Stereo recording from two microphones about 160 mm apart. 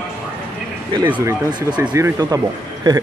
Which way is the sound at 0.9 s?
30° right (ahead or behind).